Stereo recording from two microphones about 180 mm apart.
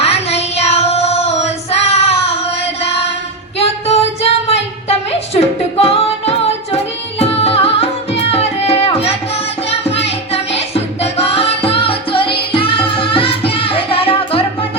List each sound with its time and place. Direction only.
0.0 s child singing: 35° left (ahead or behind)
3.6 s singing: 35° left (ahead or behind)
7.2 s music: 35° left (ahead or behind)
10.3 s music: 35° left (ahead or behind)